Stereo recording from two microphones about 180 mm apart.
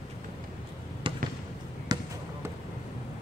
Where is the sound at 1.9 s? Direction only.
20° right (ahead or behind).